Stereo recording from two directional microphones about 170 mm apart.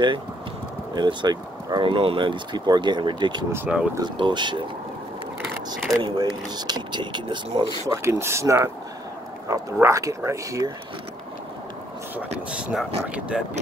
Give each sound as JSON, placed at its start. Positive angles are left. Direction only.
{"t": 0.9, "sound": "speech", "side_deg": -25}
{"t": 3.5, "sound": "speech", "side_deg": -5}
{"t": 3.9, "sound": "speech", "side_deg": -25}
{"t": 6.0, "sound": "speech", "side_deg": -25}
{"t": 8.0, "sound": "speech", "side_deg": -15}
{"t": 12.4, "sound": "speech", "side_deg": -5}